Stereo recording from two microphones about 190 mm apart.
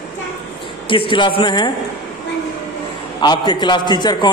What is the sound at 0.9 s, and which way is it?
Speech, 25° left (ahead or behind).